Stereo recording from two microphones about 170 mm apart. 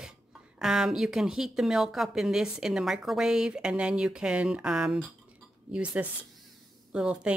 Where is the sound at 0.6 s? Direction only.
5° right (ahead or behind).